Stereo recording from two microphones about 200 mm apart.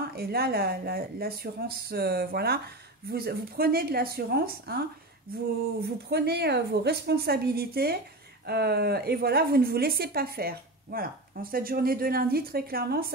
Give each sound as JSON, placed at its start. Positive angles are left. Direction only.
{"t": 0.1, "sound": "a woman's voice", "side_deg": -50}